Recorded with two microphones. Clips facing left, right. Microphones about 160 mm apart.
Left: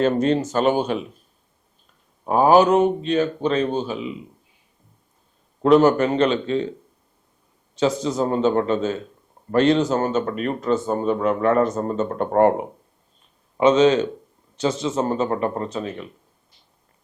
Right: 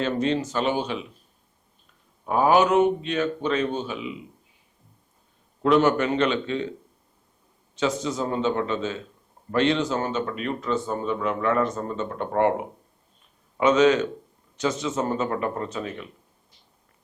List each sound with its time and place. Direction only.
0.0 s speech: 45° left (ahead or behind)
2.2 s a man's voice: 35° left (ahead or behind)
5.6 s a man's voice: 35° left (ahead or behind)
7.8 s a man's voice: 35° left (ahead or behind)
13.6 s a man's voice: 30° left (ahead or behind)